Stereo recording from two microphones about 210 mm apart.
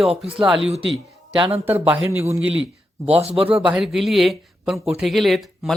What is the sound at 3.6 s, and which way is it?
Speech, 5° right (ahead or behind).